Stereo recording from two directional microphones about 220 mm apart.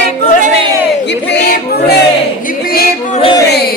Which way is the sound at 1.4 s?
50° left (ahead or behind).